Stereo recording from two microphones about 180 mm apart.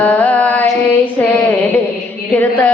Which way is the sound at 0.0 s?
10° left (ahead or behind).